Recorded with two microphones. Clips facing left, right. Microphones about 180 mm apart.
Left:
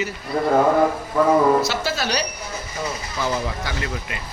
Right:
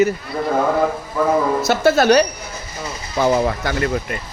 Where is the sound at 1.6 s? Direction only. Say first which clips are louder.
Right 11 dB; 55° right (ahead or behind).